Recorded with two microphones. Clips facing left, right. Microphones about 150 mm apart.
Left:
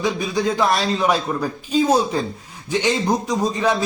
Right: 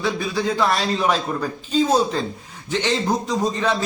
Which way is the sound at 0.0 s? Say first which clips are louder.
Left 2 dB; 15° left (ahead or behind).